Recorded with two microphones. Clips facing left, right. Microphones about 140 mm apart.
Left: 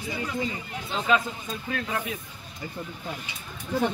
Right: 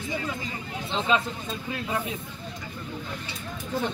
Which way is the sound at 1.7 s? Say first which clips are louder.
Even; 25° right (ahead or behind).